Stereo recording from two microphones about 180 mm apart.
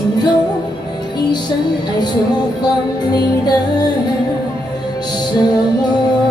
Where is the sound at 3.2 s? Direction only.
25° left (ahead or behind).